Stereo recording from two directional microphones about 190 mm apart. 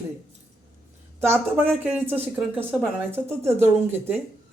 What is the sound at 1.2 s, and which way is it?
Speech, 10° right (ahead or behind).